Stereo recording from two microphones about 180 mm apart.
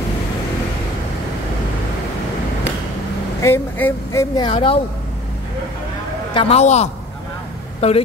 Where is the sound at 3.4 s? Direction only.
15° left (ahead or behind).